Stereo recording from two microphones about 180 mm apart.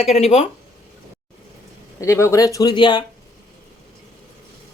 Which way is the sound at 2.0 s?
15° left (ahead or behind).